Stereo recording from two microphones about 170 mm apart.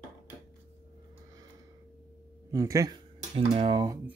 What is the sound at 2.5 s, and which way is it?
Speech, 20° right (ahead or behind).